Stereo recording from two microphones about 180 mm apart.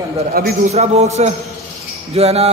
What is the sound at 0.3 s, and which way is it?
Speech, 55° right (ahead or behind).